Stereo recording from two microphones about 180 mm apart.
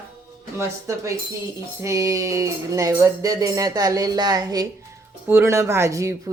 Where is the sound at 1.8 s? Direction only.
15° right (ahead or behind).